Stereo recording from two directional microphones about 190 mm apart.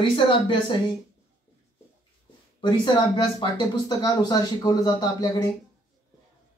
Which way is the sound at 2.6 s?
20° left (ahead or behind).